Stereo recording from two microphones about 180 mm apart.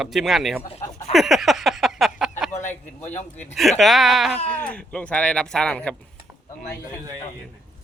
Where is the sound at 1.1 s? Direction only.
Centre (ahead or behind).